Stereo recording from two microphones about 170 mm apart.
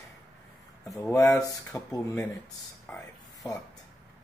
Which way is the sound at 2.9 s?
5° left (ahead or behind).